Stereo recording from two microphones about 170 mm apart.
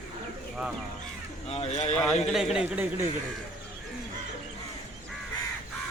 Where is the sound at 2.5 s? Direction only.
10° right (ahead or behind).